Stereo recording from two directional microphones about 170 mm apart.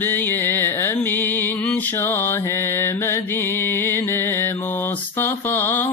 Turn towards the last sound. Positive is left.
turn(degrees=15)  # may be behind; listen again after turning